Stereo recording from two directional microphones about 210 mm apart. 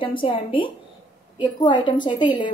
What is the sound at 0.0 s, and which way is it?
A woman's voice, 25° left (ahead or behind).